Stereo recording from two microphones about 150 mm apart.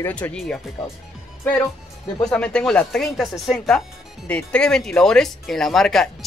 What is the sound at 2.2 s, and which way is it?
Speech, 5° left (ahead or behind).